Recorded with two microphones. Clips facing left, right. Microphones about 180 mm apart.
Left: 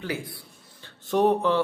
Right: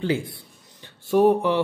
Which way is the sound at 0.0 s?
25° right (ahead or behind).